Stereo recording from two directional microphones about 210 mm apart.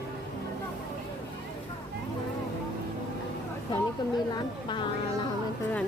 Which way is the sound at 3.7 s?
20° left (ahead or behind).